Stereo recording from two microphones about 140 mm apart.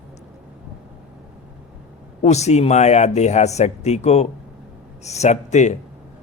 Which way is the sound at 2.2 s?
50° left (ahead or behind).